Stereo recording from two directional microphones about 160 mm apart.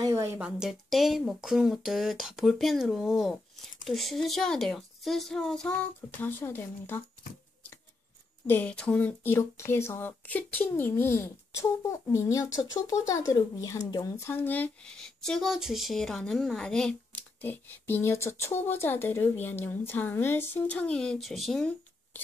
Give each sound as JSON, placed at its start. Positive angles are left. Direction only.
{"t": 0.0, "sound": "a sound", "side_deg": -20}
{"t": 0.4, "sound": "speech", "side_deg": 0}
{"t": 8.5, "sound": "speech", "side_deg": 10}